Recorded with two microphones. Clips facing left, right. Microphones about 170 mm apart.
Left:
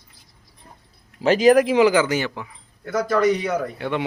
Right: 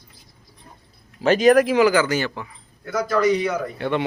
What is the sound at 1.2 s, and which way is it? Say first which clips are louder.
Speech: even; 30° left (ahead or behind).